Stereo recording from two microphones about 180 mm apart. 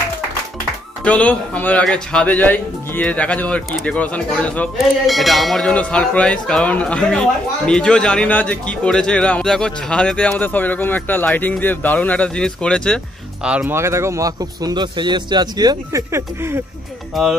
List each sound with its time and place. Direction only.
1.0 s speech: 10° left (ahead or behind)
13.5 s a man's voice: 10° right (ahead or behind)
17.1 s speech: 5° right (ahead or behind)